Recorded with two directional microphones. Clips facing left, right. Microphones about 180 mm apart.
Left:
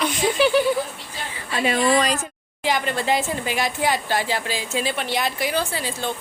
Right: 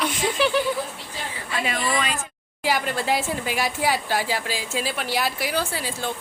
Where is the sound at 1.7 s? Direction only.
40° left (ahead or behind).